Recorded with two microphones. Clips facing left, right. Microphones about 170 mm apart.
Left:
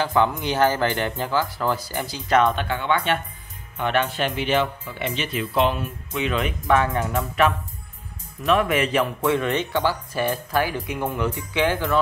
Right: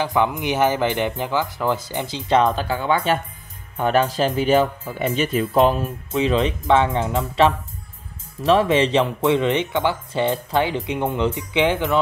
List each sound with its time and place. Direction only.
0.0 s speech: 15° right (ahead or behind)